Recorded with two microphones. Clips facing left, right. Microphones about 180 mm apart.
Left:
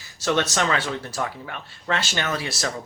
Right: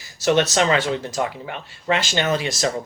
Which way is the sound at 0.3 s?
15° right (ahead or behind).